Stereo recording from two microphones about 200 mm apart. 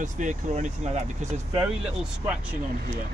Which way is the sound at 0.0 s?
40° right (ahead or behind).